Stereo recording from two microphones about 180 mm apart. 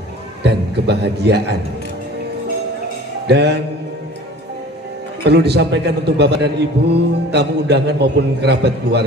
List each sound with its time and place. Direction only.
0.4 s a man's voice: 70° right (ahead or behind)
3.3 s music: 65° right (ahead or behind)
5.2 s a man's voice: 65° right (ahead or behind)